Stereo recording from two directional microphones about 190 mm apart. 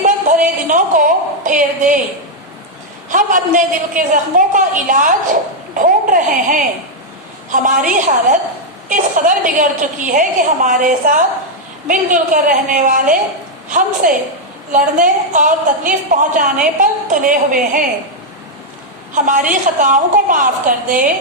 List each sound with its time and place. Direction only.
0.7 s a woman's voice: 45° right (ahead or behind)
3.1 s a woman's voice: 45° right (ahead or behind)
19.1 s a woman's voice: 45° right (ahead or behind)